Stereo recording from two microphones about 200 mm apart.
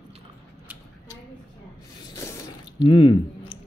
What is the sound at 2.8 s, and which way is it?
Speech, 25° left (ahead or behind).